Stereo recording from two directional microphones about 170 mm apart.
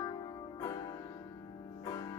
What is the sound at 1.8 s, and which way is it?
Music, 25° left (ahead or behind).